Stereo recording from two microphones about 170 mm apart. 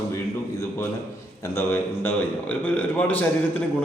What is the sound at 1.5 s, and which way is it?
A man's voice, 10° left (ahead or behind).